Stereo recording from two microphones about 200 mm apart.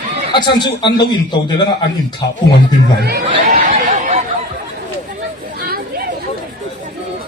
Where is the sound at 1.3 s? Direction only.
20° left (ahead or behind).